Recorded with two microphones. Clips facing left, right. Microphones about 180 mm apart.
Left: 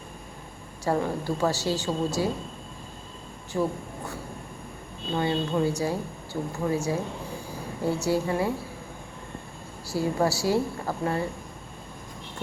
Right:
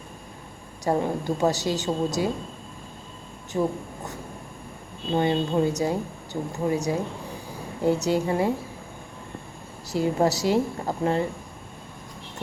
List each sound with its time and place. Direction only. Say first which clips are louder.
0.9 s a woman's voice: right 2 dB; 20° right (ahead or behind)
3.5 s a woman's voice: right 2 dB; 20° right (ahead or behind)
9.8 s a woman's voice: right 3 dB; 20° right (ahead or behind)